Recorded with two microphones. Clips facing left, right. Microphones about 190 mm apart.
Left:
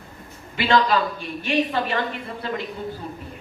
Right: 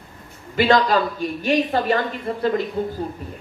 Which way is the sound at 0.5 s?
40° right (ahead or behind).